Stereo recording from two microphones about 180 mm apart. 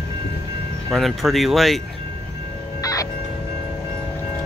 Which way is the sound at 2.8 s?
20° left (ahead or behind).